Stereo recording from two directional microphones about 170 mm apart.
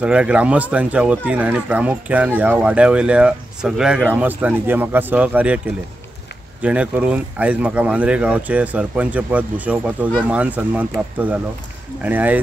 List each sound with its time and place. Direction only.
0.0 s speech: 5° right (ahead or behind)
6.6 s speech: 5° right (ahead or behind)